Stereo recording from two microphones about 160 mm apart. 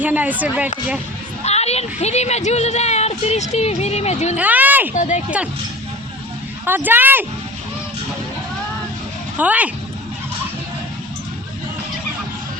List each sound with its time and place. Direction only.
0.0 s speech: 10° right (ahead or behind)
1.5 s a woman's voice: 40° left (ahead or behind)
4.4 s speech: 10° right (ahead or behind)
4.9 s a woman's voice: 50° left (ahead or behind)
6.7 s speech: 10° right (ahead or behind)
9.4 s speech: 10° right (ahead or behind)